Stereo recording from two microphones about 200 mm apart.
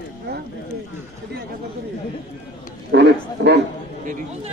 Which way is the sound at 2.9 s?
60° right (ahead or behind).